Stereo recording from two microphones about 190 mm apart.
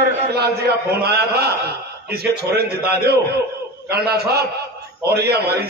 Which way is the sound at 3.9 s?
55° right (ahead or behind).